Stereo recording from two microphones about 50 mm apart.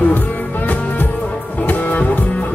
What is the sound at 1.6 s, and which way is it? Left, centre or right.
Music, left.